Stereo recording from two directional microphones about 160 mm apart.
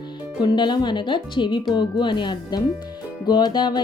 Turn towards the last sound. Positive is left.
turn(degrees=25)  # may be behind; listen again after turning